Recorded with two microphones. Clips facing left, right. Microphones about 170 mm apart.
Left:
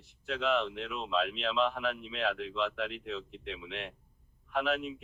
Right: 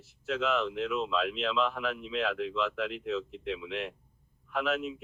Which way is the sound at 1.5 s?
35° left (ahead or behind).